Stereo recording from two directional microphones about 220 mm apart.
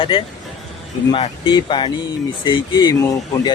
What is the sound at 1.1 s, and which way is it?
Speech, 20° left (ahead or behind).